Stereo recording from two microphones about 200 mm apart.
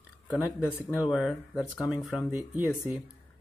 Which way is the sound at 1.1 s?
Centre (ahead or behind).